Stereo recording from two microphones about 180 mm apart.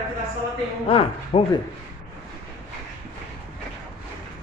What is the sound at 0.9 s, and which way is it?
Speech, 30° left (ahead or behind).